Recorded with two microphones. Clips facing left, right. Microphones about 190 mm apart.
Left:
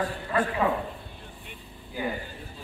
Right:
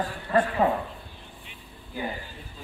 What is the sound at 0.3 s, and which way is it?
Speech, 40° right (ahead or behind).